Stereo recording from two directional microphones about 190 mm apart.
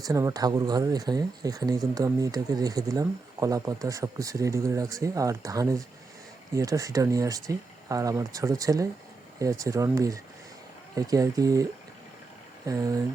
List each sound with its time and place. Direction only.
0.0 s speech: 15° right (ahead or behind)
12.6 s speech: 15° right (ahead or behind)